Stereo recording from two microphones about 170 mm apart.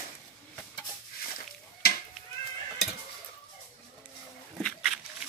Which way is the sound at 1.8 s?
65° left (ahead or behind).